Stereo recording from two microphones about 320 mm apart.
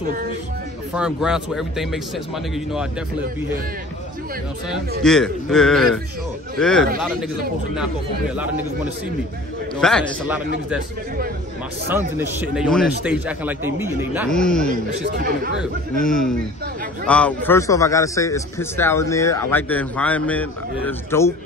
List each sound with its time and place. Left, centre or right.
0.9 s speech: centre
5.0 s speech: centre
9.8 s speech: centre
12.2 s speech: centre
14.7 s a man's voice: right
16.0 s a man's voice: centre